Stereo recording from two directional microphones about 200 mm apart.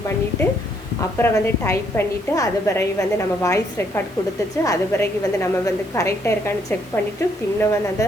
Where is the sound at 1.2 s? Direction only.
15° left (ahead or behind).